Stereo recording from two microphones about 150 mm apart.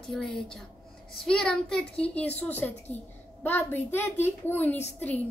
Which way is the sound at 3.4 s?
15° left (ahead or behind).